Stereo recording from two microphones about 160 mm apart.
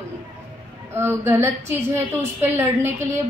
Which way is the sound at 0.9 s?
15° right (ahead or behind).